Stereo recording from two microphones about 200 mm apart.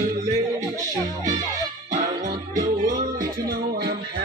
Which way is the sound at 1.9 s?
40° right (ahead or behind).